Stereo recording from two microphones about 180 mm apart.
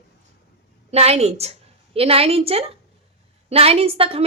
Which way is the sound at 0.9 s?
35° right (ahead or behind).